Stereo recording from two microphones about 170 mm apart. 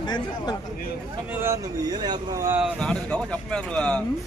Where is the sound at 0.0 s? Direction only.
25° left (ahead or behind).